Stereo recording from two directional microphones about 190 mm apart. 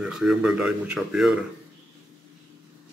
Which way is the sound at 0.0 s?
Centre (ahead or behind).